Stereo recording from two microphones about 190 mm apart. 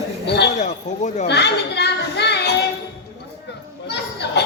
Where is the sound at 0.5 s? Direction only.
40° left (ahead or behind).